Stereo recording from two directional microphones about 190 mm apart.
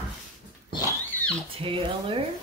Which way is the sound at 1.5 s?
30° right (ahead or behind).